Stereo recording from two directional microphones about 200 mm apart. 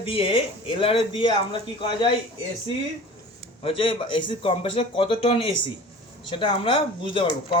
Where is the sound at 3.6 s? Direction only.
25° left (ahead or behind).